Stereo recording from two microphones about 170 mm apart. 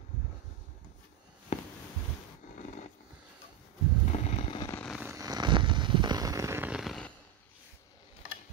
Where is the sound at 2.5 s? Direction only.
45° left (ahead or behind).